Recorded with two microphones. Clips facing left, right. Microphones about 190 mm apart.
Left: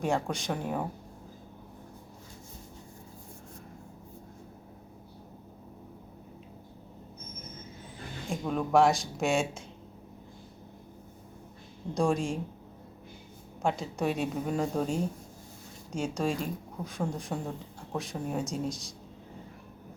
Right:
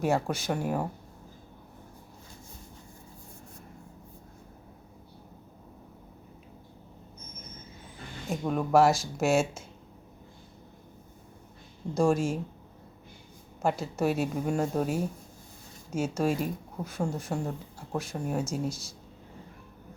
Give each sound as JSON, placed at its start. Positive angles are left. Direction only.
{"t": 0.0, "sound": "a woman's voice", "side_deg": -5}
{"t": 8.3, "sound": "a woman's voice", "side_deg": -5}
{"t": 11.9, "sound": "a woman's voice", "side_deg": -5}
{"t": 13.6, "sound": "a woman's voice", "side_deg": -5}